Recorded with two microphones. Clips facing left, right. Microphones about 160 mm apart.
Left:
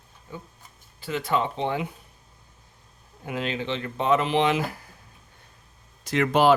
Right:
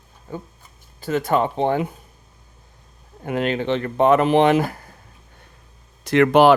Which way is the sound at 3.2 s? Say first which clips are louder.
Right 7 dB; 60° right (ahead or behind).